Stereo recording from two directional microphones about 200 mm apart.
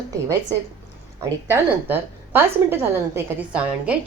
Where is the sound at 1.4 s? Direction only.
10° right (ahead or behind).